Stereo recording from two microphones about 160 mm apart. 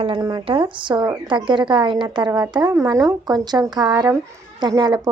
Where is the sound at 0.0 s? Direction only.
30° right (ahead or behind).